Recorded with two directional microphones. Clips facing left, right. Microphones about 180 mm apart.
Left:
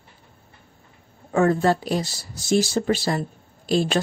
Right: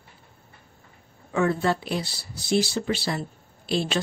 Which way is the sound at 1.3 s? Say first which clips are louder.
Left 4 dB; 45° left (ahead or behind).